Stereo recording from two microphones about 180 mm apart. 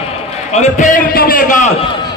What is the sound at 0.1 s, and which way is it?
A man's voice, 40° left (ahead or behind).